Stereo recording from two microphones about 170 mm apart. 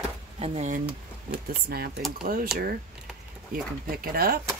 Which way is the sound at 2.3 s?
55° right (ahead or behind).